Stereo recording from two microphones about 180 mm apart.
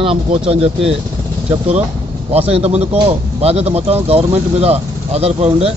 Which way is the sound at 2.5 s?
35° right (ahead or behind).